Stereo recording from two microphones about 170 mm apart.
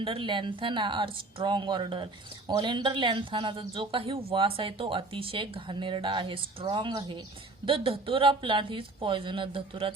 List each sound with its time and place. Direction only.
0.0 s speech: 30° right (ahead or behind)